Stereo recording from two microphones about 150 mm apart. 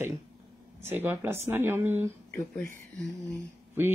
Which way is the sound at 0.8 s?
15° right (ahead or behind).